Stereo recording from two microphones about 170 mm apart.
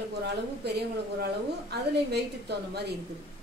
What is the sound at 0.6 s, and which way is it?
A woman's voice, 75° right (ahead or behind).